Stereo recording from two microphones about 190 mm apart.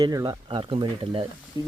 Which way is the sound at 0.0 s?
20° right (ahead or behind).